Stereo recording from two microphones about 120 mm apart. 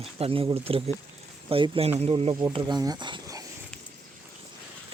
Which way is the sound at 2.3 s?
40° right (ahead or behind).